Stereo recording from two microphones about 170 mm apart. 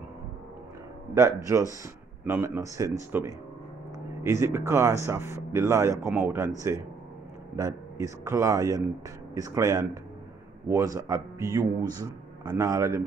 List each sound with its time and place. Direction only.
1.1 s a man's voice: 20° right (ahead or behind)
7.5 s a man's voice: 20° right (ahead or behind)